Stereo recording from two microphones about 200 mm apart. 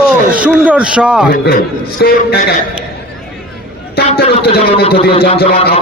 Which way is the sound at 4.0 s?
50° left (ahead or behind).